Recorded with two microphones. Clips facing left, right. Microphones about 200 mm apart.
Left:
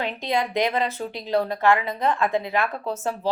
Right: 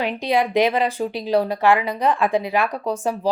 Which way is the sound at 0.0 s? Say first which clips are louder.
Right 5 dB; 15° right (ahead or behind).